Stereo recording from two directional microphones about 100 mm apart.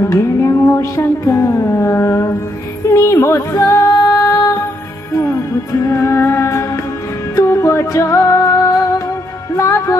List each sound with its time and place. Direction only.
0.0 s music: 30° left (ahead or behind)